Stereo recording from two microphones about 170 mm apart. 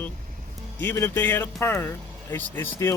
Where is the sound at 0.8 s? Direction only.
15° left (ahead or behind).